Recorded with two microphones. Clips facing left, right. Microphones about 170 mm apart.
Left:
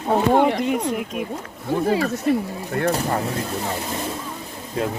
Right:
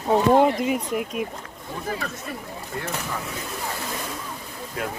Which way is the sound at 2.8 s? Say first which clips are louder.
Left 11 dB; 60° left (ahead or behind).